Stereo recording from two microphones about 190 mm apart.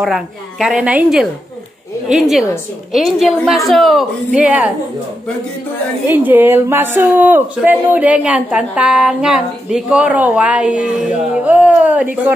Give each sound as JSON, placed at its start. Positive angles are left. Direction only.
{"t": 0.0, "sound": "a woman's voice", "side_deg": 0}
{"t": 6.0, "sound": "speech", "side_deg": -10}